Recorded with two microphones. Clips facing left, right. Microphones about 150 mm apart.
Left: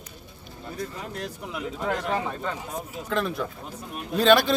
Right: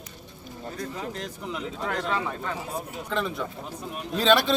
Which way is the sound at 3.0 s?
Centre (ahead or behind).